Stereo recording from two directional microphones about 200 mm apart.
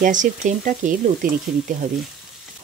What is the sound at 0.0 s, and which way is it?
Speech, 40° right (ahead or behind).